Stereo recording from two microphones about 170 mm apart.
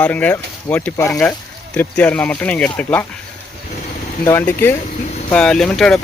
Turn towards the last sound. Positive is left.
turn(degrees=5)  # may be behind; listen again after turning